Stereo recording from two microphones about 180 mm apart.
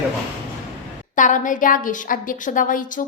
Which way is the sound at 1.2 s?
45° left (ahead or behind).